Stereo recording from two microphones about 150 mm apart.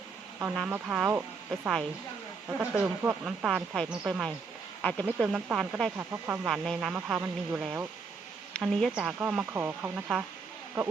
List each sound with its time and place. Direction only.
0.5 s speech: 10° right (ahead or behind)
2.5 s speech: 10° right (ahead or behind)
4.8 s speech: 10° left (ahead or behind)
5.2 s speech: 5° right (ahead or behind)
6.5 s speech: centre (ahead or behind)
8.5 s a woman's voice: centre (ahead or behind)